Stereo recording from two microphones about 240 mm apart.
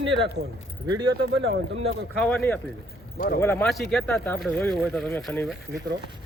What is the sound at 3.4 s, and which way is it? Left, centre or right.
Speech, centre.